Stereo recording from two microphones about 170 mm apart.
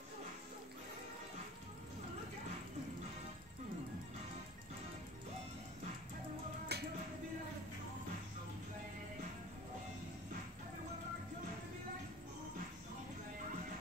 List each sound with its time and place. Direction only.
6.7 s music: 70° right (ahead or behind)